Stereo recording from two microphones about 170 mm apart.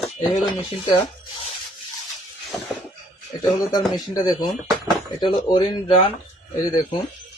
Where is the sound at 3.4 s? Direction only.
25° left (ahead or behind).